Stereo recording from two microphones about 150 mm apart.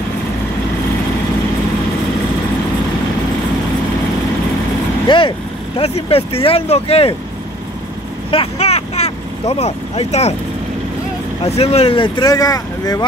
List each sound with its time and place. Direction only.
5.0 s vehicle: 35° left (ahead or behind)
5.8 s speech: 40° left (ahead or behind)
8.3 s vehicle: 40° left (ahead or behind)
11.4 s speech: 45° left (ahead or behind); by 13.0 s 25° left (ahead or behind)